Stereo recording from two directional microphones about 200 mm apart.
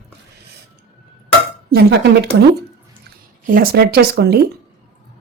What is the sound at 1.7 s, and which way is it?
Speech, 55° right (ahead or behind).